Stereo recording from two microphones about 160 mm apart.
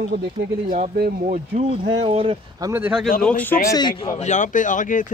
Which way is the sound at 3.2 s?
10° left (ahead or behind).